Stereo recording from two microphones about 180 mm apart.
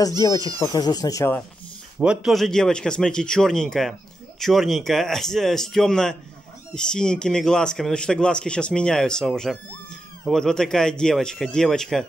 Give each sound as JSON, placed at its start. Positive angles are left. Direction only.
{"t": 0.2, "sound": "speech", "side_deg": 20}
{"t": 2.0, "sound": "a man's voice", "side_deg": -5}